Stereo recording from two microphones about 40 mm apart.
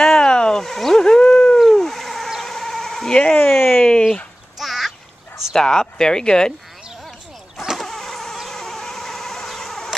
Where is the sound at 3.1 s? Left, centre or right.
Left.